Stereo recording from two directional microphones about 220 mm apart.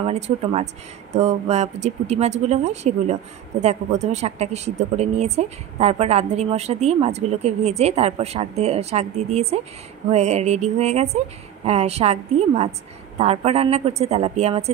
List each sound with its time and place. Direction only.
0.0 s speech: 25° right (ahead or behind)